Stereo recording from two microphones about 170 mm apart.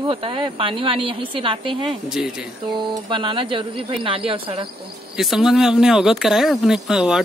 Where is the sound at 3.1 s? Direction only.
30° right (ahead or behind).